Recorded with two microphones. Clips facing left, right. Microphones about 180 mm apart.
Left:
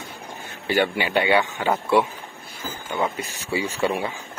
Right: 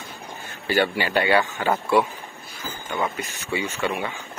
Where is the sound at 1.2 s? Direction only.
Centre (ahead or behind).